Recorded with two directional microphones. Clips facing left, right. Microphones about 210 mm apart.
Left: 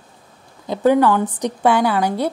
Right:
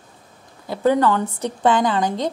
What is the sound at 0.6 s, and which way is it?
A woman's voice, 15° left (ahead or behind).